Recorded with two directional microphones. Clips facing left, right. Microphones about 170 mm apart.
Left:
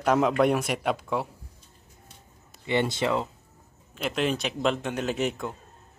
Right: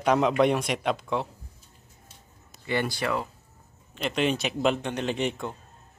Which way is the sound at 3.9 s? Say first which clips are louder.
Right 1 dB; centre (ahead or behind).